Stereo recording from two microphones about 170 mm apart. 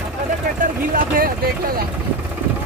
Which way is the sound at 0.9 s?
55° right (ahead or behind).